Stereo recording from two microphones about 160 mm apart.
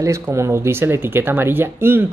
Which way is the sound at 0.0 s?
20° right (ahead or behind).